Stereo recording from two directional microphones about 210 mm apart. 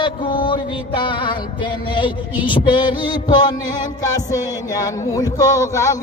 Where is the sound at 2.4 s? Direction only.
20° left (ahead or behind).